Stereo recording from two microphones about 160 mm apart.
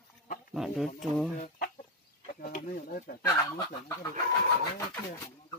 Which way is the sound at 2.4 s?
60° left (ahead or behind).